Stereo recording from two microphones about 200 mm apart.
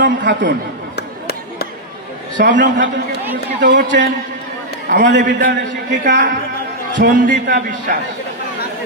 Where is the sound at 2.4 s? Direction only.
50° right (ahead or behind).